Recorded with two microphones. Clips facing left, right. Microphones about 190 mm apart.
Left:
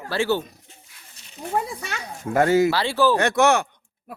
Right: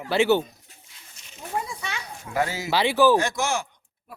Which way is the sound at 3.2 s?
65° left (ahead or behind).